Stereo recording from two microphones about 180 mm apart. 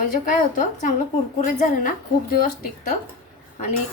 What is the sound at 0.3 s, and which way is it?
A woman's voice, 45° left (ahead or behind).